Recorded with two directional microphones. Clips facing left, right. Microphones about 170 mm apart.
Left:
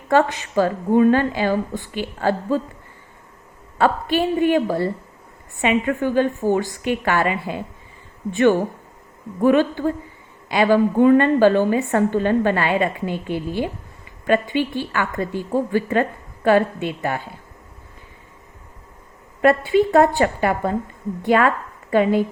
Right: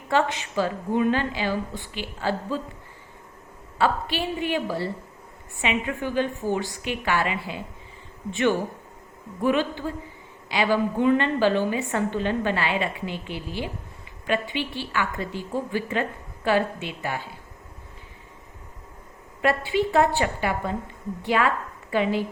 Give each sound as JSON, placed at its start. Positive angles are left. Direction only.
{"t": 0.1, "sound": "a woman's voice", "side_deg": 50}
{"t": 3.8, "sound": "a woman's voice", "side_deg": 50}
{"t": 9.4, "sound": "a woman's voice", "side_deg": 50}
{"t": 19.4, "sound": "a woman's voice", "side_deg": 45}